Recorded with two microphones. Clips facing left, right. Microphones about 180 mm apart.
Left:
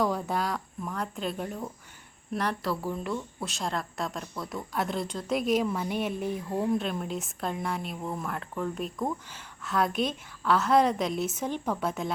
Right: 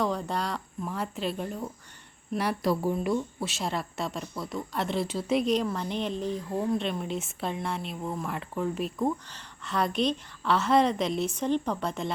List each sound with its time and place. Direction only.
0.0 s speech: 5° left (ahead or behind)
2.4 s speech: 10° right (ahead or behind)
3.4 s speech: 5° right (ahead or behind)
9.2 s speech: 5° left (ahead or behind)